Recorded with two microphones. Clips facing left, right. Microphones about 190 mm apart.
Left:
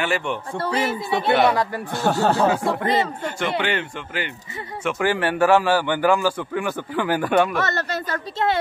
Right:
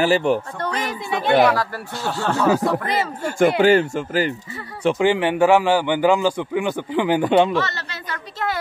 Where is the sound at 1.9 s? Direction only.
50° left (ahead or behind).